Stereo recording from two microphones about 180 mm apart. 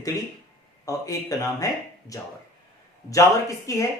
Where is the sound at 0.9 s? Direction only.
20° left (ahead or behind).